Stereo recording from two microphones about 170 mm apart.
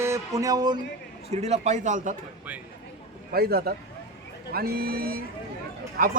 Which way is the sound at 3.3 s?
65° right (ahead or behind).